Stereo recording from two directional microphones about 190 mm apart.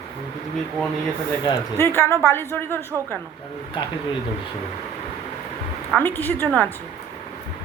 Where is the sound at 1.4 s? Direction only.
15° left (ahead or behind).